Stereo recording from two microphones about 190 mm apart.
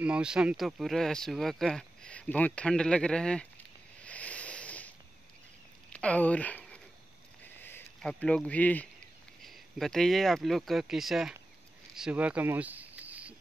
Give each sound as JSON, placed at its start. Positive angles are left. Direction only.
{"t": 0.0, "sound": "speech", "side_deg": -5}
{"t": 4.0, "sound": "a sound", "side_deg": 5}
{"t": 5.9, "sound": "speech", "side_deg": 5}